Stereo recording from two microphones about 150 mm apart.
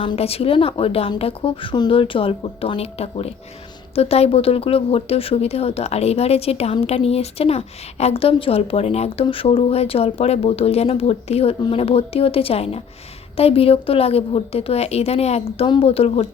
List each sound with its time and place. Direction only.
0.0 s speech: 40° left (ahead or behind)